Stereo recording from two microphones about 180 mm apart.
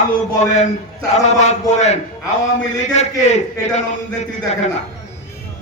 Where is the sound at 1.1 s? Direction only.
40° left (ahead or behind).